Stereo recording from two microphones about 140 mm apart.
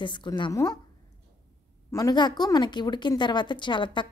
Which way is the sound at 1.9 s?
25° left (ahead or behind).